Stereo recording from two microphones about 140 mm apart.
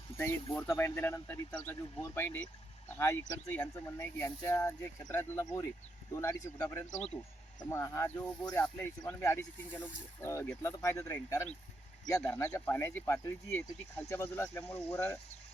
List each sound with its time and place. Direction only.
0.2 s speech: 15° left (ahead or behind)